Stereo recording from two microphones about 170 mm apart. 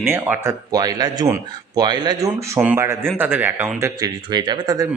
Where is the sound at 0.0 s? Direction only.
15° right (ahead or behind).